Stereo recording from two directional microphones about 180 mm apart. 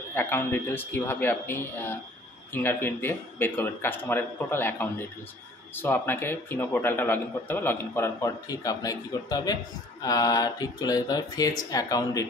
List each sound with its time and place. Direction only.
0.1 s a man's voice: 15° left (ahead or behind)